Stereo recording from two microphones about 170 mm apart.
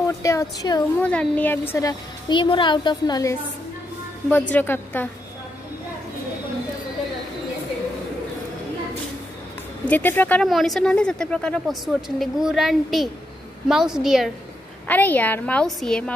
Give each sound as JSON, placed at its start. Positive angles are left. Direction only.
{"t": 0.2, "sound": "speech", "side_deg": 20}
{"t": 1.0, "sound": "a woman's voice", "side_deg": 5}
{"t": 4.3, "sound": "a woman's voice", "side_deg": 10}
{"t": 9.8, "sound": "speech", "side_deg": 10}
{"t": 14.9, "sound": "a woman's voice", "side_deg": 10}